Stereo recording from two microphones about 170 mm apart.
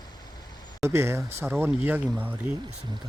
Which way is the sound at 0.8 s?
15° right (ahead or behind).